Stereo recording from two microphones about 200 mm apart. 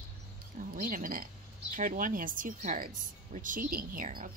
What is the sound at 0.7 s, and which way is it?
Speech, 40° right (ahead or behind).